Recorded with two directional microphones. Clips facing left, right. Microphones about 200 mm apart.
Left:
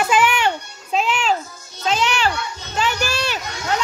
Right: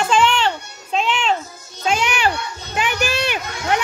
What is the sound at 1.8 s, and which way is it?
Children playing, 10° right (ahead or behind).